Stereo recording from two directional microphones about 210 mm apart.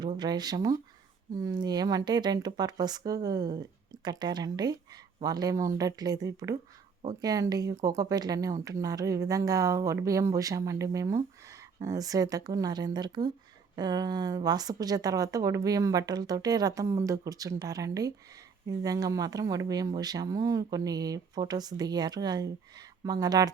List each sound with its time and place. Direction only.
0.0 s speech: 20° right (ahead or behind)